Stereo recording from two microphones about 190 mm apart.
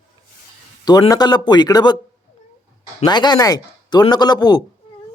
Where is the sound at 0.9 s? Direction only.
20° left (ahead or behind).